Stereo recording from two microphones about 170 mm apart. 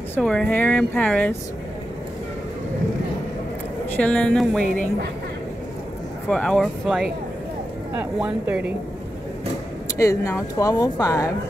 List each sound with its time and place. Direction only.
0.1 s speech: 5° left (ahead or behind)
4.0 s speech: 5° left (ahead or behind)
6.2 s speech: 5° left (ahead or behind)
9.9 s speech: 20° left (ahead or behind)